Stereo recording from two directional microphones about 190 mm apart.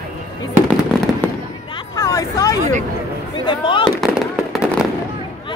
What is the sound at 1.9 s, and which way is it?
Speech, 15° left (ahead or behind).